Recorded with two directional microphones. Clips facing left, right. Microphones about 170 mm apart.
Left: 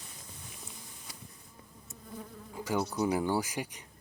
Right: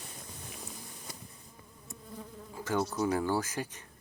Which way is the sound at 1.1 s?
50° right (ahead or behind).